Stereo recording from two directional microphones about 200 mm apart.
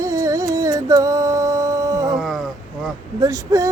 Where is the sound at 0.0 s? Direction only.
15° right (ahead or behind).